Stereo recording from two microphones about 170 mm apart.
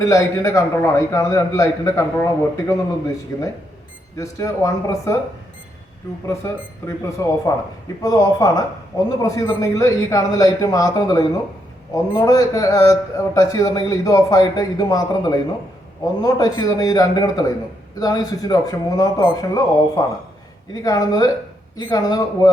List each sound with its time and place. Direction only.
0.0 s a man's voice: 20° left (ahead or behind)
6.2 s a man's voice: 15° left (ahead or behind)